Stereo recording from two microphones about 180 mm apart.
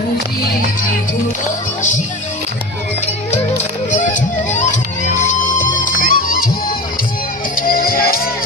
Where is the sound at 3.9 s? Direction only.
45° left (ahead or behind).